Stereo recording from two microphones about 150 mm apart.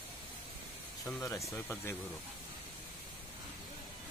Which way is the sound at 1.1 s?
20° left (ahead or behind).